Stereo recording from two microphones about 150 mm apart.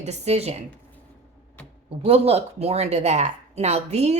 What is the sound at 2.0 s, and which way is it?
A woman's voice, 40° right (ahead or behind).